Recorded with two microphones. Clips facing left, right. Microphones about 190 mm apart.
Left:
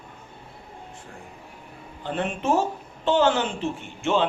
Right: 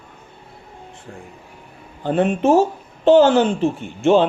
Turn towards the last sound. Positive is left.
turn(degrees=-35)  # may be behind; listen again after turning